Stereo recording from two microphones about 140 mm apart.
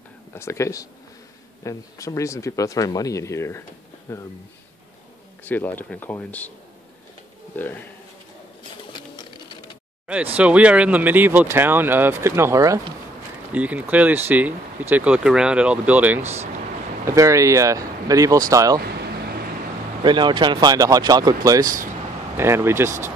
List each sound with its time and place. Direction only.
0.3 s speech: 20° left (ahead or behind)
5.4 s speech: 15° left (ahead or behind)
7.5 s speech: 15° left (ahead or behind)
10.3 s speech: 10° right (ahead or behind)
13.5 s speech: 10° right (ahead or behind)
17.0 s speech: 20° right (ahead or behind)
20.0 s speech: 30° right (ahead or behind)